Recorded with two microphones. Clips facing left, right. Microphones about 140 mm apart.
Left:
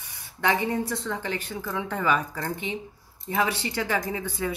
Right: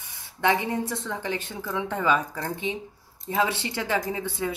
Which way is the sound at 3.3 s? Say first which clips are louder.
Right 1 dB; 20° right (ahead or behind).